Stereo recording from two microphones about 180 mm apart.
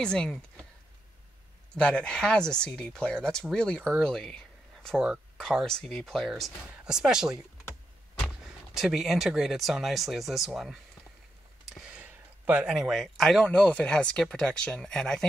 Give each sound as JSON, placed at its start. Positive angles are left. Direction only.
{"t": 0.0, "sound": "speech", "side_deg": 5}
{"t": 1.8, "sound": "speech", "side_deg": 5}
{"t": 8.7, "sound": "speech", "side_deg": 0}